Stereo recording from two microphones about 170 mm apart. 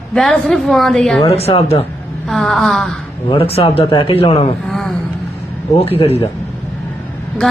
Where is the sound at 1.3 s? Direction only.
35° left (ahead or behind).